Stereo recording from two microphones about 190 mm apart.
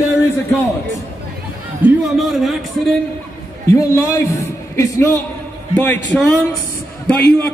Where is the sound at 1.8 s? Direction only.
Centre (ahead or behind).